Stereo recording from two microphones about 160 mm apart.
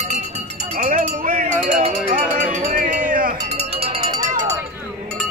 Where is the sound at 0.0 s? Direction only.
45° right (ahead or behind); by 1.5 s 60° right (ahead or behind).